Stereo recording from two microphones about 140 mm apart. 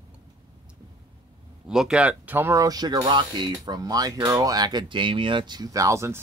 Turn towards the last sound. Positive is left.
turn(degrees=-20)  # may be behind; listen again after turning